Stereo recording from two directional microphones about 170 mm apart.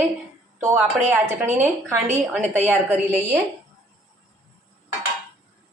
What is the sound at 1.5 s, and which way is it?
Speech, 10° right (ahead or behind).